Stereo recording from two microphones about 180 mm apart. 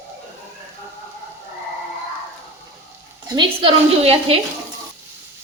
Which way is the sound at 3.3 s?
30° right (ahead or behind).